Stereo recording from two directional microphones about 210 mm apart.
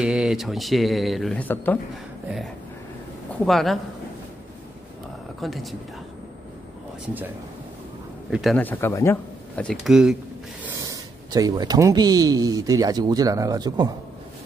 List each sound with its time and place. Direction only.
0.0 s speech: 5° right (ahead or behind)
3.3 s speech: centre (ahead or behind)
5.4 s speech: centre (ahead or behind)
8.3 s speech: centre (ahead or behind)
10.6 s speech: 15° right (ahead or behind)